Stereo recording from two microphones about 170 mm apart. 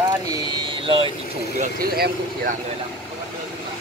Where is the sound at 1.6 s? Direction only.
60° right (ahead or behind).